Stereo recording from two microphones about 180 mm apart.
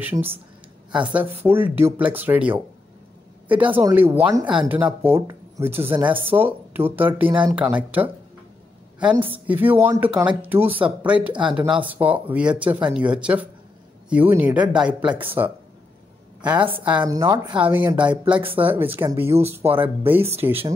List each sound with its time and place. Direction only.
0.0 s speech: 10° right (ahead or behind)
7.2 s speech: 25° right (ahead or behind)
7.5 s speech: 10° right (ahead or behind)
16.3 s a sound: 5° right (ahead or behind)
16.8 s speech: 5° right (ahead or behind)
17.1 s speech: 20° right (ahead or behind)
17.6 s speech: 10° right (ahead or behind)